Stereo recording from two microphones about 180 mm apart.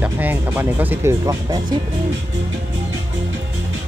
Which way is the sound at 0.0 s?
10° right (ahead or behind).